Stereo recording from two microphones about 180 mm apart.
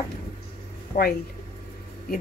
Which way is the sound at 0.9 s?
40° left (ahead or behind).